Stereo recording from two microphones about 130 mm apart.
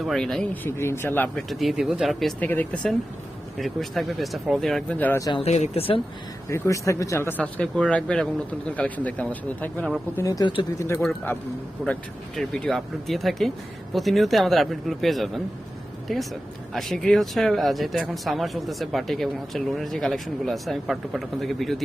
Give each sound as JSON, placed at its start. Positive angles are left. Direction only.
{"t": 0.0, "sound": "speech", "side_deg": 0}
{"t": 1.5, "sound": "speech", "side_deg": 0}
{"t": 2.4, "sound": "speech", "side_deg": 10}
{"t": 3.6, "sound": "speech", "side_deg": 0}
{"t": 4.9, "sound": "speech", "side_deg": 15}
{"t": 5.3, "sound": "speech", "side_deg": 55}
{"t": 6.5, "sound": "speech", "side_deg": 25}
{"t": 10.2, "sound": "speech", "side_deg": 25}
{"t": 10.4, "sound": "speech", "side_deg": 40}
{"t": 11.8, "sound": "speech", "side_deg": 0}